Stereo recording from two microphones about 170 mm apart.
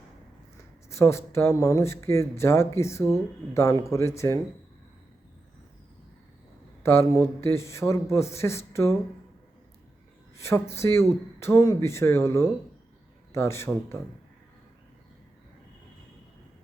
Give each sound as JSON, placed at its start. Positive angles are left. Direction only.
{"t": 0.9, "sound": "speech", "side_deg": 15}
{"t": 6.8, "sound": "speech", "side_deg": 15}
{"t": 10.3, "sound": "speech", "side_deg": 15}